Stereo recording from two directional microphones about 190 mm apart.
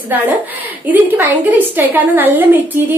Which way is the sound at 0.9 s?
10° right (ahead or behind).